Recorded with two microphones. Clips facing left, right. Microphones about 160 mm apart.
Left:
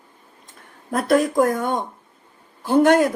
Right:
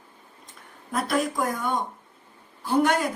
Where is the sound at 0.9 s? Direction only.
50° left (ahead or behind).